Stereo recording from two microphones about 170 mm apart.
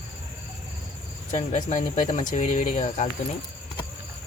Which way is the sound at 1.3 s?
45° left (ahead or behind).